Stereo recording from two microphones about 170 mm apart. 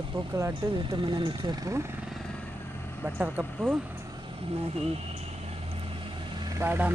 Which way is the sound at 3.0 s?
10° right (ahead or behind).